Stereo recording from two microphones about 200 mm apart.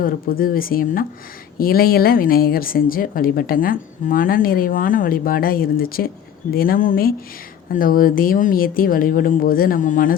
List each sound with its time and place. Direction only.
0.0 s a woman's voice: 45° left (ahead or behind)